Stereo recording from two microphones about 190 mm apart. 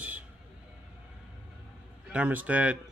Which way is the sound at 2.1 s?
10° right (ahead or behind).